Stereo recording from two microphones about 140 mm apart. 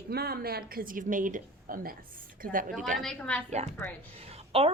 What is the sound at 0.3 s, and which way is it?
A woman's voice, 90° right.